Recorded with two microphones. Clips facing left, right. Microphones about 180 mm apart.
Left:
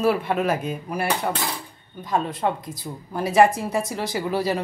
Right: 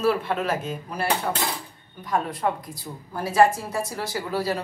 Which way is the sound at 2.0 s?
20° left (ahead or behind).